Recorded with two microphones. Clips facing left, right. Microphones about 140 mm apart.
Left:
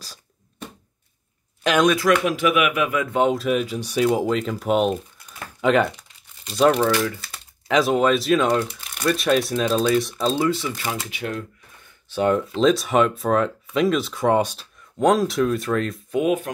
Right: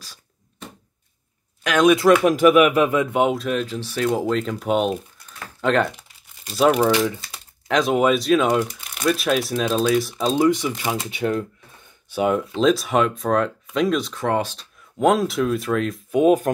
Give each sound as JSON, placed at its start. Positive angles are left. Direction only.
{"t": 2.2, "sound": "speech", "side_deg": -40}
{"t": 3.1, "sound": "speech", "side_deg": -10}
{"t": 3.3, "sound": "speech", "side_deg": 5}
{"t": 5.9, "sound": "speech", "side_deg": -5}
{"t": 7.6, "sound": "speech", "side_deg": 0}
{"t": 10.1, "sound": "speech", "side_deg": -15}
{"t": 11.1, "sound": "speech", "side_deg": -35}
{"t": 12.1, "sound": "speech", "side_deg": -5}
{"t": 14.1, "sound": "speech", "side_deg": 15}
{"t": 15.0, "sound": "speech", "side_deg": 0}